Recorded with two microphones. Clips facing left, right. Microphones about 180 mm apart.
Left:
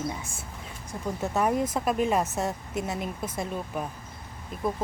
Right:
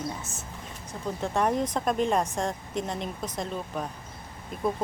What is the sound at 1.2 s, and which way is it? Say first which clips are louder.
Speech: even; 5° left (ahead or behind).